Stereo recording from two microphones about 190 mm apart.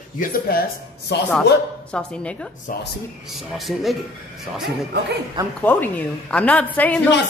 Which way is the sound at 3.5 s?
Centre (ahead or behind).